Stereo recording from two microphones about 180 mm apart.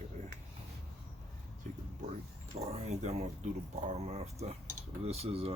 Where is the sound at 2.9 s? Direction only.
40° right (ahead or behind).